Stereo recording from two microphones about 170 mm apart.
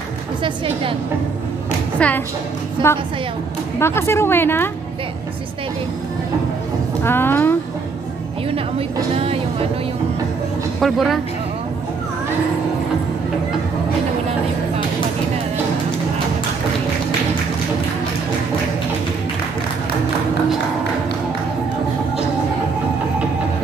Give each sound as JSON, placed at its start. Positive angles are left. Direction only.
{"t": 2.0, "sound": "a woman's voice", "side_deg": 10}
{"t": 7.0, "sound": "speech", "side_deg": 15}
{"t": 9.1, "sound": "a woman's voice", "side_deg": -35}
{"t": 10.8, "sound": "speech", "side_deg": 0}